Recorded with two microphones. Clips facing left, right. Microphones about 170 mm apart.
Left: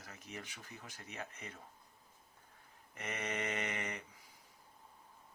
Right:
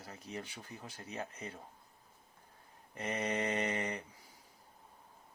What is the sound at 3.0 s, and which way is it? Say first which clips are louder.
Speech: right 5 dB; 30° right (ahead or behind).